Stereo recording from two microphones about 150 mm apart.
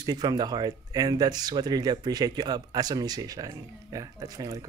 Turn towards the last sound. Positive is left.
turn(degrees=-25)  # may be behind; listen again after turning